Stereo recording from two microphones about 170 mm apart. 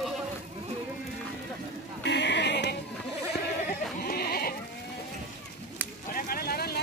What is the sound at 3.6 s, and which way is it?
Sheep, 60° left (ahead or behind).